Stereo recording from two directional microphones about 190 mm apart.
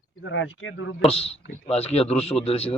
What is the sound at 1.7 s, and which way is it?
Speech, 35° left (ahead or behind).